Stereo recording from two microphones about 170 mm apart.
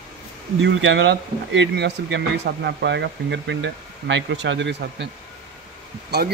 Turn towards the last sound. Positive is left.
turn(degrees=-75)  # may be behind; listen again after turning